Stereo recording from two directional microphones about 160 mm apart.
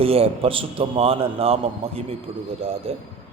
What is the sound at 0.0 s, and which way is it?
A man's voice, 35° right (ahead or behind).